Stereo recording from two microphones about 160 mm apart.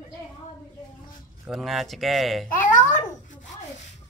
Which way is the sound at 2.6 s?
55° left (ahead or behind).